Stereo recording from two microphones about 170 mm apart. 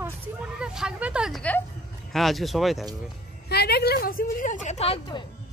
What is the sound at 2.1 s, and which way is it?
Speech, centre (ahead or behind).